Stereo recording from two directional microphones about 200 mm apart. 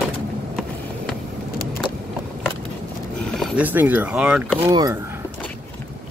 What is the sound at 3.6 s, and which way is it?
Speech, 10° right (ahead or behind).